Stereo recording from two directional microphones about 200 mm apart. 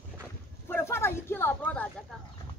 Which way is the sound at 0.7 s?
10° left (ahead or behind).